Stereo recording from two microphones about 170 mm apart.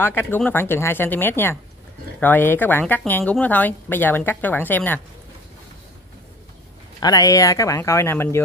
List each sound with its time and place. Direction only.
0.0 s speech: 10° left (ahead or behind)
7.0 s speech: 20° left (ahead or behind)